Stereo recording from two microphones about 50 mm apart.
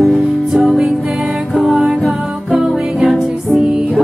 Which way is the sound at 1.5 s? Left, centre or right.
Centre.